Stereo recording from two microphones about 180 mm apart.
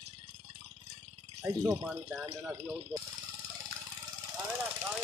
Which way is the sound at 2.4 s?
15° right (ahead or behind).